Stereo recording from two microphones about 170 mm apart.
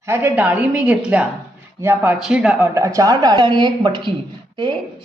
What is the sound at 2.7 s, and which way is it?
A woman's voice, 20° right (ahead or behind).